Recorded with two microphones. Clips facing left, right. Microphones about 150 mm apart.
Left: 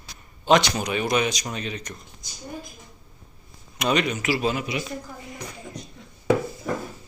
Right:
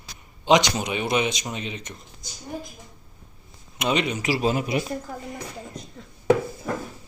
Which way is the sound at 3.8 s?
25° right (ahead or behind).